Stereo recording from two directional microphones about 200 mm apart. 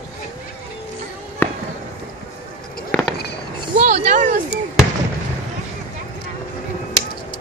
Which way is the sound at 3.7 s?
40° right (ahead or behind).